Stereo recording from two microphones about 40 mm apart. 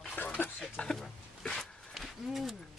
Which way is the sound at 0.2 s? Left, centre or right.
Left.